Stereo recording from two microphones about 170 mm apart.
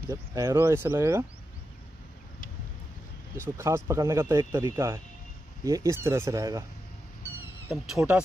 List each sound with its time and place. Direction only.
0.1 s speech: 20° right (ahead or behind)
3.3 s speech: 15° right (ahead or behind)
8.0 s speech: 10° right (ahead or behind)